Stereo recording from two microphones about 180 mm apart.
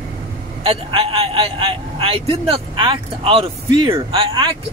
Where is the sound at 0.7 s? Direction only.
30° right (ahead or behind).